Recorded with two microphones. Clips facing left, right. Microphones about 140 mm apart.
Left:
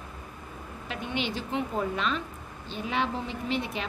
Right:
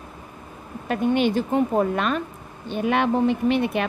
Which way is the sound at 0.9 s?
50° right (ahead or behind).